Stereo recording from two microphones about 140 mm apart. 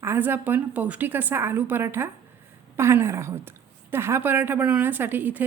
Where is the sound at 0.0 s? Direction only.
15° right (ahead or behind).